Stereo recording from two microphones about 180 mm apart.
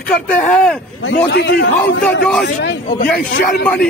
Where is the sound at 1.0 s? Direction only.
80° left.